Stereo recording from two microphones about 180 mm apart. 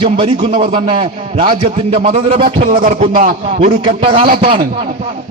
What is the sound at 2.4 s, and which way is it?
Music, 45° right (ahead or behind).